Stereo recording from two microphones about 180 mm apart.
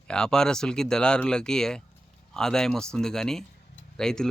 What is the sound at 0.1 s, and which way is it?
Speech, 5° left (ahead or behind).